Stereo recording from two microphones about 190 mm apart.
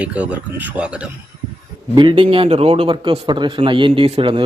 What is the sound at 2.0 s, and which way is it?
A man's voice, 25° right (ahead or behind).